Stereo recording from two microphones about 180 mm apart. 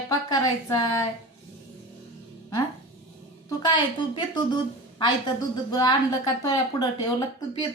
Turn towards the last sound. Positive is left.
turn(degrees=25)  # may be behind; listen again after turning